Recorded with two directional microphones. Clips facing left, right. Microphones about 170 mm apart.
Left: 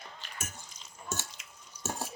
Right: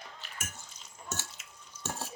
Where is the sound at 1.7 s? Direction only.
10° left (ahead or behind).